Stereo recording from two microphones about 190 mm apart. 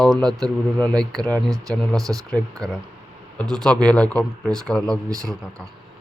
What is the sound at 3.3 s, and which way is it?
Speech, 5° left (ahead or behind).